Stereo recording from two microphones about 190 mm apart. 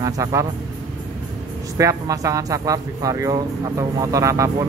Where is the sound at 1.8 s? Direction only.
15° right (ahead or behind).